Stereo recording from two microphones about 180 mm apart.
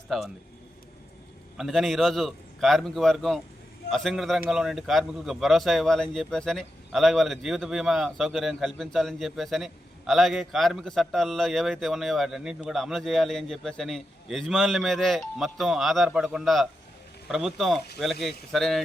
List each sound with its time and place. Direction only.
0.1 s a man's voice: centre (ahead or behind)
1.5 s a man's voice: centre (ahead or behind)